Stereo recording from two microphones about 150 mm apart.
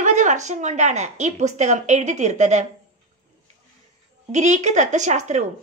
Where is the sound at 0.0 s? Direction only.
55° right (ahead or behind).